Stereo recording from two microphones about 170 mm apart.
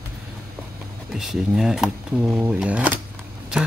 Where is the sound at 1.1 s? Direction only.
Centre (ahead or behind).